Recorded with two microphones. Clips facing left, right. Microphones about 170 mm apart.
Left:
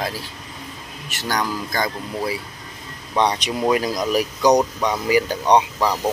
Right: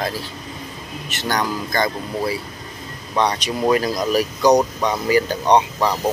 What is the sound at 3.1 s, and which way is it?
Speech, 20° left (ahead or behind).